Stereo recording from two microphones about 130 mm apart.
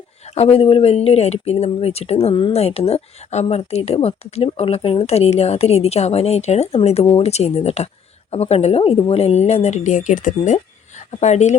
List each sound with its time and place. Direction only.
0.3 s a woman's voice: 50° left (ahead or behind)